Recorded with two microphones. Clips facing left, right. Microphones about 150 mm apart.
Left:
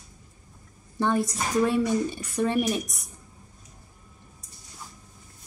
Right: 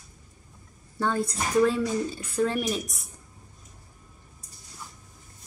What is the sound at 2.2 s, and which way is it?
Speech, 15° left (ahead or behind).